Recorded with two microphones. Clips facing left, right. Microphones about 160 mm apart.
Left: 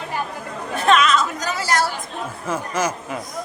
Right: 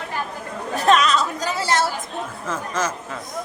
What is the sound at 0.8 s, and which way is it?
Chatter, 40° right (ahead or behind).